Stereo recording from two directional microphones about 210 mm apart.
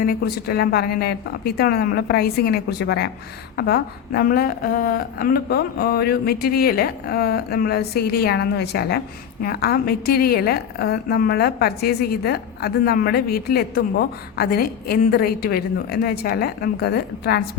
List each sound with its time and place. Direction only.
0.0 s a woman's voice: 45° left (ahead or behind)